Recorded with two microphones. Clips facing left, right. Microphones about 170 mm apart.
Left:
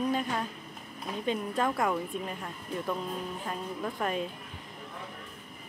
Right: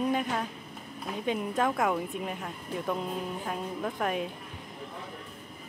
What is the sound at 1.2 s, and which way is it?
Speech, 5° right (ahead or behind).